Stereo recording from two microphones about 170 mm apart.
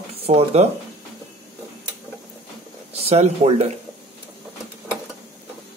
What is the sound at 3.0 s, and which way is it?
Speech, 40° right (ahead or behind).